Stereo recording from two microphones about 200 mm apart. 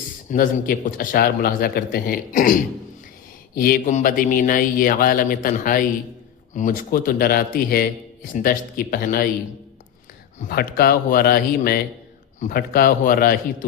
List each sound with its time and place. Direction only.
0.3 s a man's voice: 45° left (ahead or behind)
10.4 s a man's voice: 50° left (ahead or behind)